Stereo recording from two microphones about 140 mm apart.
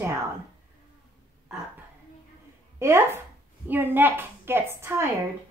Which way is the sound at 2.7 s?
20° right (ahead or behind).